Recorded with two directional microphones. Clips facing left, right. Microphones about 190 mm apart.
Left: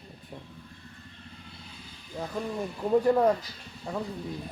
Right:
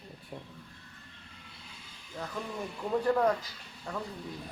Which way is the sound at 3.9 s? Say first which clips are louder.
Left 4 dB; 10° left (ahead or behind).